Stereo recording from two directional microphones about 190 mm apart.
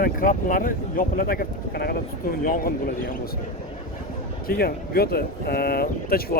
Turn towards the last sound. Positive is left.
turn(degrees=50)  # may be behind; listen again after turning